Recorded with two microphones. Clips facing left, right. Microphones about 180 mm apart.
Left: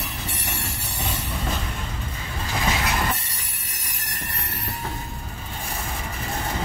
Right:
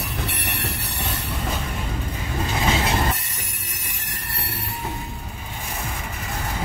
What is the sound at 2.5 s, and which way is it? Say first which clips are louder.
Vehicle: right 2 dB; 25° right (ahead or behind).